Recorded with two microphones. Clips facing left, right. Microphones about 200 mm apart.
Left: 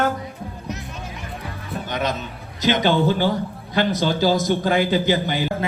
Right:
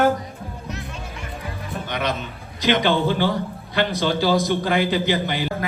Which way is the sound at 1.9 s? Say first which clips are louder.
Left 1 dB; 45° left (ahead or behind).